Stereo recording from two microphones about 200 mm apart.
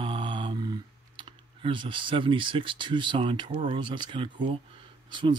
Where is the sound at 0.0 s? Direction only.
25° right (ahead or behind).